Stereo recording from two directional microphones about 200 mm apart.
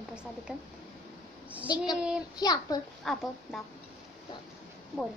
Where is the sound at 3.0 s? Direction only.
Centre (ahead or behind).